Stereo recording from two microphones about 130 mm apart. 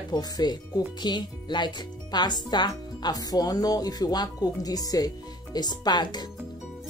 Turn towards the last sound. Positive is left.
turn(degrees=35)  # may be behind; listen again after turning